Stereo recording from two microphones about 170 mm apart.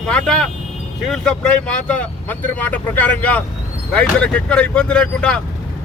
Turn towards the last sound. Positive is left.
turn(degrees=5)  # may be behind; listen again after turning